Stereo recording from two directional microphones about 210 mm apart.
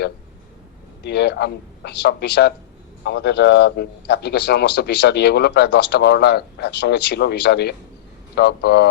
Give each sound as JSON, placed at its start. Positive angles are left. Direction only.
{"t": 1.0, "sound": "a man's voice", "side_deg": 50}